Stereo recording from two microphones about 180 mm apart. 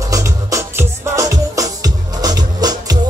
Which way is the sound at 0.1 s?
15° right (ahead or behind).